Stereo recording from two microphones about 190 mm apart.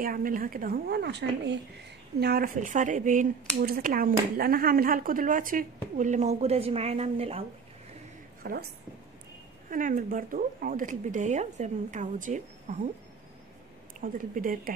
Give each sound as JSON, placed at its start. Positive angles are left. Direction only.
{"t": 0.0, "sound": "speech", "side_deg": -50}
{"t": 2.1, "sound": "speech", "side_deg": -55}
{"t": 8.4, "sound": "a woman's voice", "side_deg": -50}
{"t": 9.7, "sound": "speech", "side_deg": -45}
{"t": 14.0, "sound": "speech", "side_deg": -45}